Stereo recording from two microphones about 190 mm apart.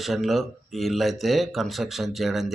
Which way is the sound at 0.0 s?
Centre (ahead or behind).